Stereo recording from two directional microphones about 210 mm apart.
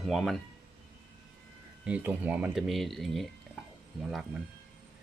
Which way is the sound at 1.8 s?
5° right (ahead or behind).